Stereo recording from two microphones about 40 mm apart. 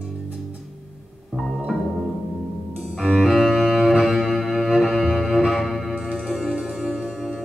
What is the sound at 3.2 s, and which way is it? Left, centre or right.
Cello, centre.